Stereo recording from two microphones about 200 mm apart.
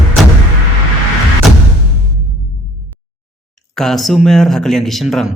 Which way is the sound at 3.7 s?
Centre (ahead or behind).